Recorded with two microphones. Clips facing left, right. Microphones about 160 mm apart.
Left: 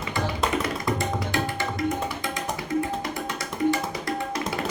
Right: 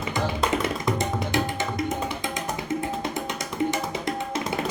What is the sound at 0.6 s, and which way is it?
Tabla, 20° right (ahead or behind).